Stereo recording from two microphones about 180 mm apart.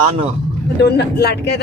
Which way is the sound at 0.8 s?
65° left (ahead or behind).